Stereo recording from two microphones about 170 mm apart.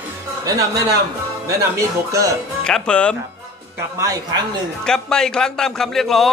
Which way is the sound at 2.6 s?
5° left (ahead or behind).